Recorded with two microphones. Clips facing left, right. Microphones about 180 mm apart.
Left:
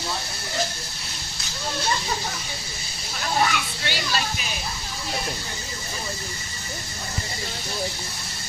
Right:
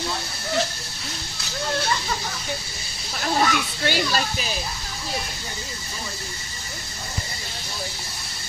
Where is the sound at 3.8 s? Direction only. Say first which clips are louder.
Right 6 dB; 45° right (ahead or behind).